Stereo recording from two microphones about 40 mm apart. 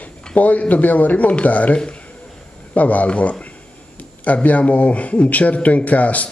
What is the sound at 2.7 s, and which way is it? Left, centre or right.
Speech, left.